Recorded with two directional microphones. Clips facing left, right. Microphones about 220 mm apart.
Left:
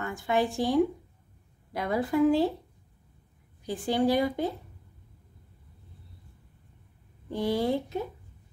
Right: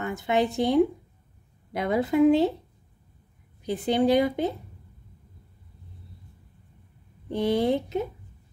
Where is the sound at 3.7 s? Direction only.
20° right (ahead or behind).